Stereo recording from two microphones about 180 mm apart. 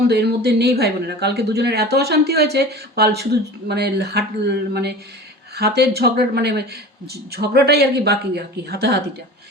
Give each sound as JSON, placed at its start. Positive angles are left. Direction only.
{"t": 0.1, "sound": "speech", "side_deg": -65}